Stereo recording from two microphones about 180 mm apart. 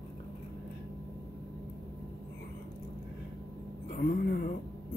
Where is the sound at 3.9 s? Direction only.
60° left (ahead or behind).